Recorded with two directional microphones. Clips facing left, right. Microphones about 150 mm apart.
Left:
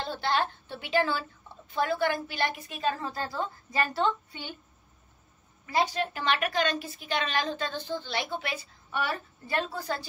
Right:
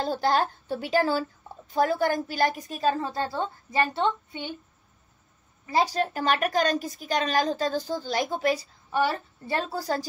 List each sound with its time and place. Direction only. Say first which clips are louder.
0.0 s a woman's voice: right 5 dB; 40° right (ahead or behind); by 4.5 s 25° right (ahead or behind)
5.7 s a woman's voice: right 3 dB; 35° right (ahead or behind)